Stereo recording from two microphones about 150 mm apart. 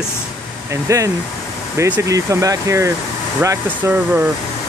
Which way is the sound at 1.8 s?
20° right (ahead or behind).